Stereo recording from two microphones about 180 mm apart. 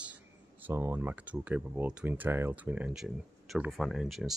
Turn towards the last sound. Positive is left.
turn(degrees=0)  # may be behind; listen again after turning